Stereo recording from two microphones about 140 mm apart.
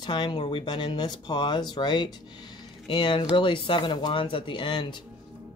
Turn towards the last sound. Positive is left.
turn(degrees=35)  # may be behind; listen again after turning